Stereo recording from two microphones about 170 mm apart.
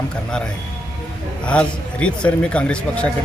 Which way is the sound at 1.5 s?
5° left (ahead or behind).